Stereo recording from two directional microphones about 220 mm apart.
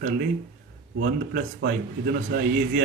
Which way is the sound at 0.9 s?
50° right (ahead or behind).